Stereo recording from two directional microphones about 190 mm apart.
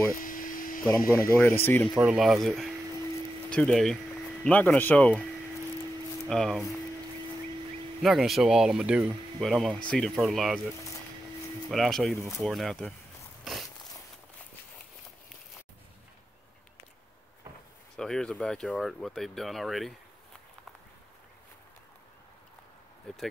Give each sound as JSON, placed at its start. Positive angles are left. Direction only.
{"t": 0.2, "sound": "a sound", "side_deg": 45}
{"t": 0.8, "sound": "speech", "side_deg": 15}
{"t": 2.0, "sound": "speech", "side_deg": -5}
{"t": 6.2, "sound": "speech", "side_deg": 0}
{"t": 8.0, "sound": "speech", "side_deg": 0}
{"t": 11.7, "sound": "speech", "side_deg": 0}
{"t": 13.4, "sound": "a sound", "side_deg": 0}
{"t": 17.9, "sound": "speech", "side_deg": 5}